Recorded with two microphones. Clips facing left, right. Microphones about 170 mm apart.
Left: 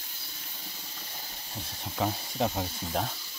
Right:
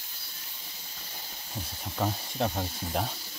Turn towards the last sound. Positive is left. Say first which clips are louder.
# even
turn(degrees=0)  # may be behind; listen again after turning